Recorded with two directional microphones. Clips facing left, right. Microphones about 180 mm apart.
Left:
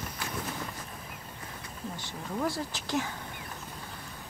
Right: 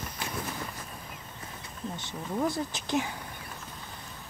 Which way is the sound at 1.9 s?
20° right (ahead or behind).